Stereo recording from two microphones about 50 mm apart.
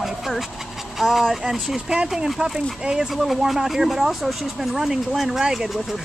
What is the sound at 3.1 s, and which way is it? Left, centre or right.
Speech, centre.